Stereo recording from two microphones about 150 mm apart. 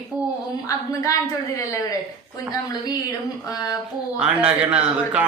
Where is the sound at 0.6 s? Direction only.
20° left (ahead or behind).